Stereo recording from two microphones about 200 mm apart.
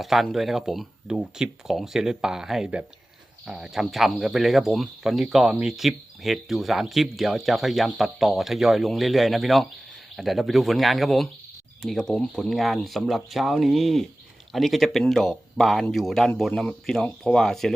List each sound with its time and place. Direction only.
0.0 s speech: centre (ahead or behind)